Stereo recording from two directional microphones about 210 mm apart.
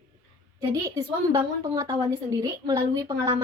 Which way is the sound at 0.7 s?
15° right (ahead or behind).